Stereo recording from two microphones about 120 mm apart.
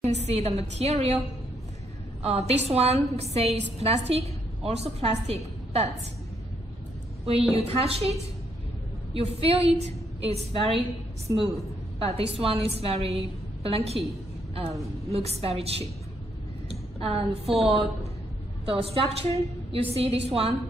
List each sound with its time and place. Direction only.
0.0 s a woman's voice: 65° right (ahead or behind)
2.2 s a woman's voice: 60° right (ahead or behind)
7.2 s a woman's voice: 55° right (ahead or behind)
11.3 s a woman's voice: 25° right (ahead or behind)
12.0 s a woman's voice: 55° right (ahead or behind)
17.0 s a woman's voice: 55° right (ahead or behind)
18.7 s a woman's voice: 50° right (ahead or behind)